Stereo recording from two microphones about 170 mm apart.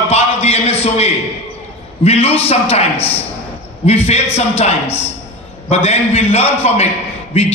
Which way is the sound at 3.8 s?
40° left (ahead or behind).